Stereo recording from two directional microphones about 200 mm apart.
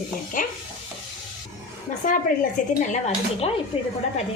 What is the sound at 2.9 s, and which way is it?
A woman's voice, 30° left (ahead or behind).